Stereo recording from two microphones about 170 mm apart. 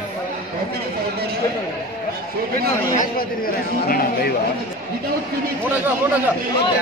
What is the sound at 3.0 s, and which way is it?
A man's voice, 60° left (ahead or behind).